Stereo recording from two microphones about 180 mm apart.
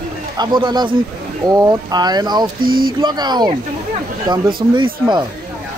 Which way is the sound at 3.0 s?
25° right (ahead or behind).